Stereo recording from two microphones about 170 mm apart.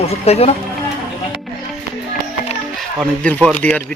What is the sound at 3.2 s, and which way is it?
Speech, 5° left (ahead or behind).